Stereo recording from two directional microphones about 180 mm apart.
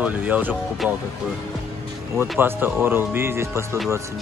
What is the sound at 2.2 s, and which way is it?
Speech, 10° right (ahead or behind).